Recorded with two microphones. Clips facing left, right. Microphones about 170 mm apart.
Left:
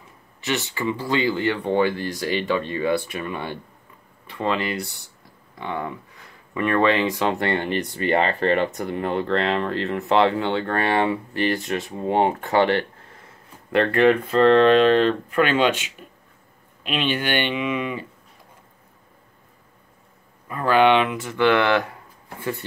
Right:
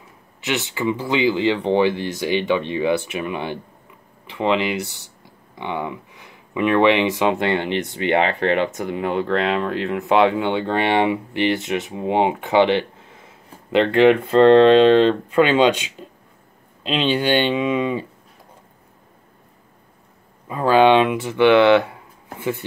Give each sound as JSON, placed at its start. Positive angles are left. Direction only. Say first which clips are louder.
{"t": 0.5, "sound": "speech", "louder": "right 3 dB", "side_deg": -15}
{"t": 4.6, "sound": "speech", "louder": "right 4 dB", "side_deg": -85}
{"t": 5.6, "sound": "speech", "louder": "right 2 dB", "side_deg": -15}
{"t": 8.0, "sound": "speech", "louder": "right 2 dB", "side_deg": -70}
{"t": 8.6, "sound": "speech", "louder": "right 2 dB", "side_deg": -5}
{"t": 14.2, "sound": "speech", "louder": "right 4 dB", "side_deg": -25}
{"t": 20.4, "sound": "speech", "louder": "right 3 dB", "side_deg": -20}